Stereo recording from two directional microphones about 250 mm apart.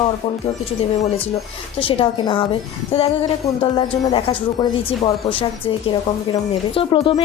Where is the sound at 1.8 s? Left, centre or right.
Left.